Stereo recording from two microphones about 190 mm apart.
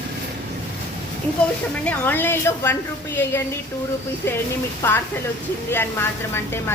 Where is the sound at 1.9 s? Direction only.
10° left (ahead or behind).